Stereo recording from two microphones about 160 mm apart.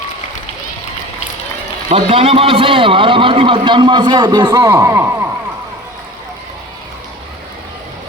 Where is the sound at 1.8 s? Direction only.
40° right (ahead or behind); by 5.3 s 15° right (ahead or behind).